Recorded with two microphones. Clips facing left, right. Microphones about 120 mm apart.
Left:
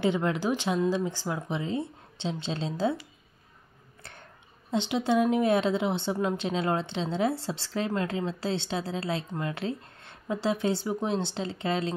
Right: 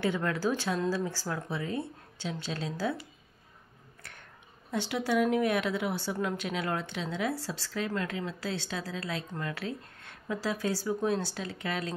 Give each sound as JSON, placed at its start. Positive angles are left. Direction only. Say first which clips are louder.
{"t": 0.0, "sound": "speech", "louder": "left 3 dB", "side_deg": 20}
{"t": 4.6, "sound": "speech", "louder": "left 4 dB", "side_deg": 20}